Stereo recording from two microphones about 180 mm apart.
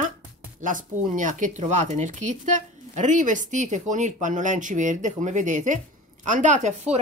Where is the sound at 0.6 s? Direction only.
45° right (ahead or behind).